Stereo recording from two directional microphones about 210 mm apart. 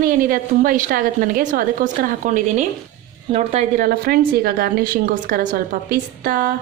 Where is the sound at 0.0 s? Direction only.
40° right (ahead or behind).